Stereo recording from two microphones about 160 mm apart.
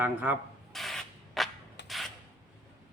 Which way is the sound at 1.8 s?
90° left.